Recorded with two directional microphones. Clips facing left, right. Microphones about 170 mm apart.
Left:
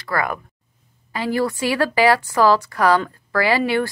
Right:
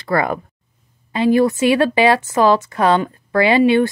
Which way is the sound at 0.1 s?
25° right (ahead or behind).